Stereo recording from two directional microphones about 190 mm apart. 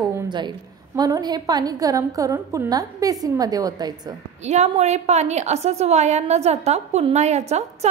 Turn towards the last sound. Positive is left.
turn(degrees=-35)  # may be behind; listen again after turning